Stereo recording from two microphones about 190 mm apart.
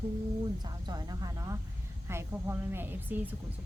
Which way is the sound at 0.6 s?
20° right (ahead or behind).